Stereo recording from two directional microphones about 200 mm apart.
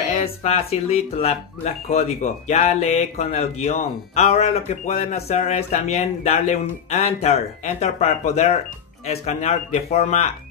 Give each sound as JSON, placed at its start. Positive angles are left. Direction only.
{"t": 0.1, "sound": "speech", "side_deg": 30}